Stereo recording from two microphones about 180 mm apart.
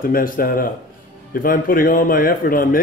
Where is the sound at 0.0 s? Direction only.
50° left (ahead or behind).